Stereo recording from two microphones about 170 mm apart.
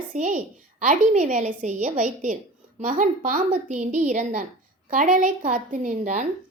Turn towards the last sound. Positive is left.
turn(degrees=-50)  # may be behind; listen again after turning